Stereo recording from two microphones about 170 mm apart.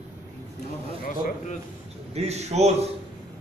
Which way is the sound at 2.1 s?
40° right (ahead or behind).